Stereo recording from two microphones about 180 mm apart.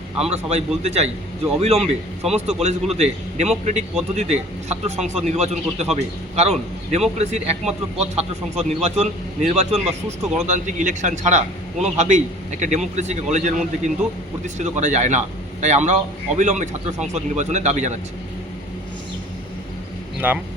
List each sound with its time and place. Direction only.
0.2 s a man's voice: 35° right (ahead or behind)
20.2 s speech: 10° right (ahead or behind)